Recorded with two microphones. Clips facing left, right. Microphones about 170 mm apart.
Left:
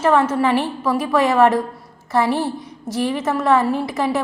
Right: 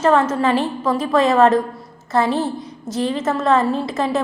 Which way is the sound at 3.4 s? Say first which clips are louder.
Left 1 dB; 25° right (ahead or behind).